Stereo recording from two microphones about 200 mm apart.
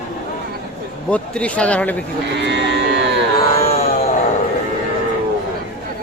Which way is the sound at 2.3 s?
60° right (ahead or behind).